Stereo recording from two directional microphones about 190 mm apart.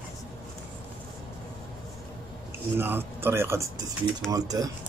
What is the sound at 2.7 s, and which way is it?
Speech, 10° right (ahead or behind).